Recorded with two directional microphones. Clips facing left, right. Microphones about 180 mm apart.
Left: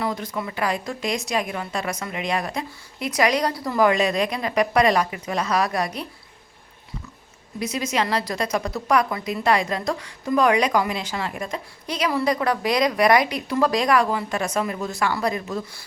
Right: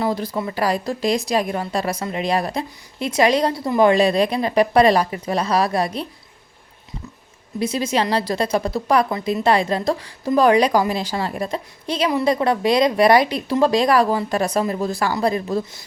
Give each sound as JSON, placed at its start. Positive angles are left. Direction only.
{"t": 0.0, "sound": "a woman's voice", "side_deg": -30}
{"t": 7.6, "sound": "a woman's voice", "side_deg": -30}